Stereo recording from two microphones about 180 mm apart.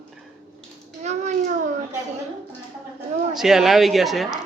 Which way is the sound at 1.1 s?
40° right (ahead or behind).